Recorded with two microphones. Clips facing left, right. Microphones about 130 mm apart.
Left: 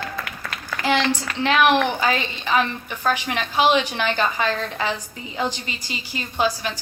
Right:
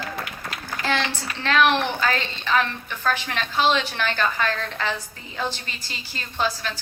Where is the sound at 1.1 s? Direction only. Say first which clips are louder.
Left 5 dB; 15° left (ahead or behind).